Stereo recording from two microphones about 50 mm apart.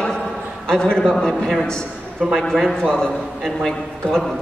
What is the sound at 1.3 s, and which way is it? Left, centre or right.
A man's voice, centre.